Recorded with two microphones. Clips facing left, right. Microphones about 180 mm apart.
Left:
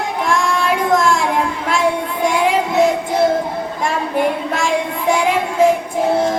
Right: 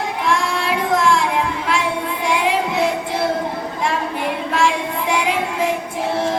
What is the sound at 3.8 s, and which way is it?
Child singing, 45° left (ahead or behind).